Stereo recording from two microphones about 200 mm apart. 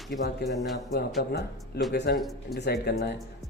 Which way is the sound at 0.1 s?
55° left (ahead or behind).